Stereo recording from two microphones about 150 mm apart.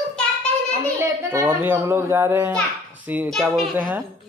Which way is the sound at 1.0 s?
15° right (ahead or behind).